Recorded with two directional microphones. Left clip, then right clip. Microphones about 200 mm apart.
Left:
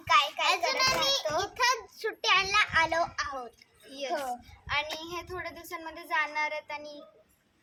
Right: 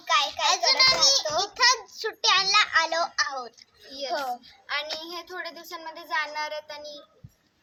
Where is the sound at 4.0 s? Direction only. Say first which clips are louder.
Right 3 dB; 5° right (ahead or behind).